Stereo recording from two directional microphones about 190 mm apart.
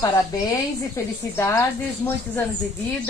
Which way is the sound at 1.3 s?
15° left (ahead or behind).